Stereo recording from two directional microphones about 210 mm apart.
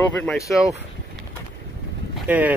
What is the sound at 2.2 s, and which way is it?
Speech, 5° right (ahead or behind).